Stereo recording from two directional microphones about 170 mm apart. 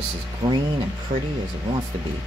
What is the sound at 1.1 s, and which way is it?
Speech, 50° right (ahead or behind).